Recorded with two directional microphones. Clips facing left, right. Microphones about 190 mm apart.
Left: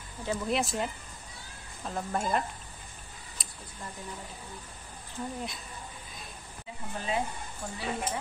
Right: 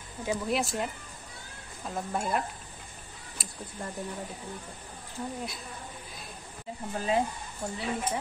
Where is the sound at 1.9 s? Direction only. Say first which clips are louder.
Even; 5° right (ahead or behind).